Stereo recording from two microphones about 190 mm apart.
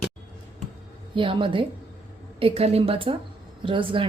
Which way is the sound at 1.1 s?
25° right (ahead or behind).